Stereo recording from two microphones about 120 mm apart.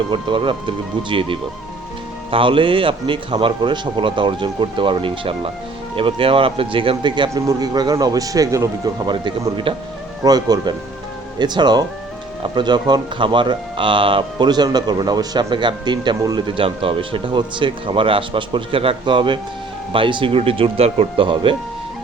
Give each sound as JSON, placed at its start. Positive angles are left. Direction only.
{"t": 0.1, "sound": "speech", "side_deg": -45}
{"t": 9.0, "sound": "speech", "side_deg": -40}